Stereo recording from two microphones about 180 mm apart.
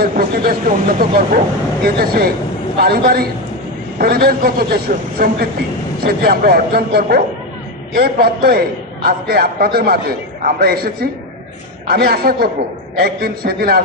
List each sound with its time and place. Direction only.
0.0 s a man's voice: 55° right (ahead or behind)